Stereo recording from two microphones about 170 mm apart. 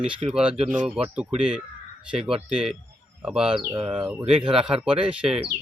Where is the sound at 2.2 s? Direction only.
35° right (ahead or behind).